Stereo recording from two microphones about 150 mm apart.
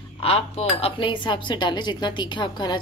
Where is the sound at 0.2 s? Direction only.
40° left (ahead or behind).